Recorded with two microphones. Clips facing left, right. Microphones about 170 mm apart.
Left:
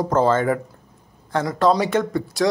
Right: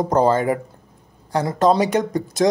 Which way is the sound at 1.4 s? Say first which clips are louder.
Right 2 dB; 25° right (ahead or behind).